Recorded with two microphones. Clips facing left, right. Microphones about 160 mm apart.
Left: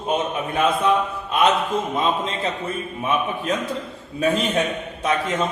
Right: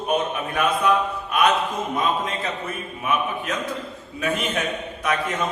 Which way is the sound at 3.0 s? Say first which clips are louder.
Left 1 dB; 30° left (ahead or behind).